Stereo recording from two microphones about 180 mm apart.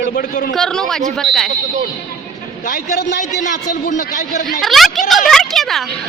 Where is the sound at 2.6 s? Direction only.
60° left (ahead or behind).